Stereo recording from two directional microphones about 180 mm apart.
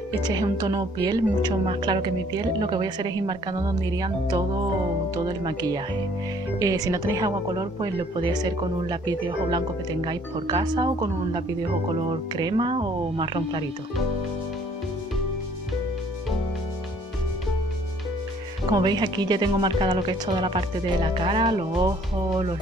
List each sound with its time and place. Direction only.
0.2 s speech: 20° right (ahead or behind)
18.7 s speech: 25° right (ahead or behind)